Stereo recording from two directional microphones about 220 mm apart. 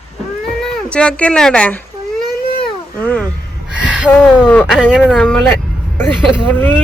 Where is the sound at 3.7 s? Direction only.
5° right (ahead or behind).